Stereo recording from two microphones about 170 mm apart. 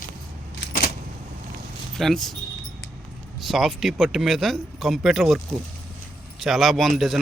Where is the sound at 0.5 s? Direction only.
60° left (ahead or behind).